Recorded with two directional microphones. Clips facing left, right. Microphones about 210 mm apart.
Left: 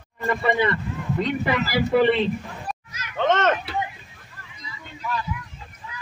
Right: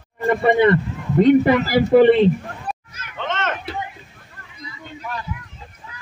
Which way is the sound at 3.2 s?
45° left (ahead or behind).